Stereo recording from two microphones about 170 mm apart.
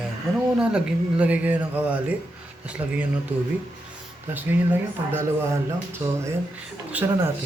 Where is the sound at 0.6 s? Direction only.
5° right (ahead or behind).